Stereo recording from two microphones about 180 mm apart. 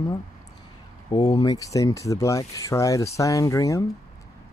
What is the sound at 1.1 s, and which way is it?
Speech, 25° left (ahead or behind).